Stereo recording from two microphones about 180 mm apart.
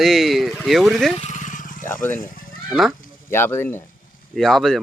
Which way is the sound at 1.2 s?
45° left (ahead or behind).